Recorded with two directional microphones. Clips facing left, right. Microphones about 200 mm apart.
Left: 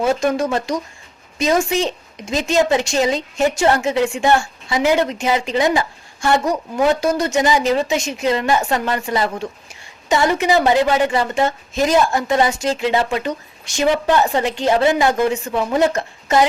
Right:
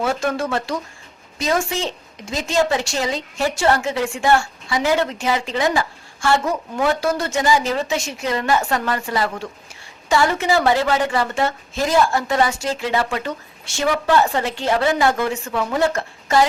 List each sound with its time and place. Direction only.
0.0 s a woman's voice: 20° left (ahead or behind)